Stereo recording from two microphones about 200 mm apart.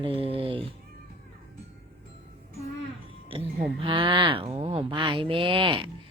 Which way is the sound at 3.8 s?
25° right (ahead or behind).